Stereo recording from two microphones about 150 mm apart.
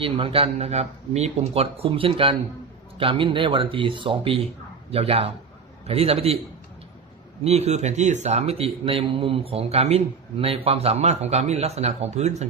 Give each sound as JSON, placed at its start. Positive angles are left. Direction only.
{"t": 0.0, "sound": "speech", "side_deg": -35}
{"t": 7.4, "sound": "a man's voice", "side_deg": -45}